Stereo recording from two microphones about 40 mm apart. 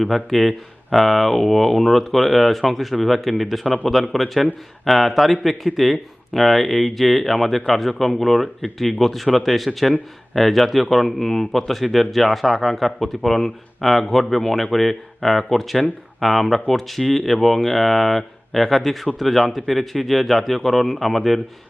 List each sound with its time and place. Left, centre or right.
0.0 s a man's voice: centre